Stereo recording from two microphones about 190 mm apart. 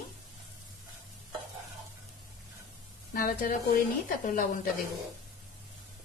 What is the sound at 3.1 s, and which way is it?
A woman's voice, 45° left (ahead or behind).